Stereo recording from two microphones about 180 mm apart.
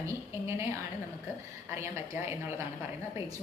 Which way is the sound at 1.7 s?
15° right (ahead or behind).